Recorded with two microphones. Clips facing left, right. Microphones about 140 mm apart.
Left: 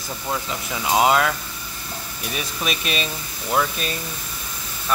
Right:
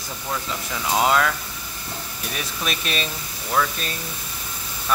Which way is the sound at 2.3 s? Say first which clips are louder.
Left 2 dB; 5° left (ahead or behind).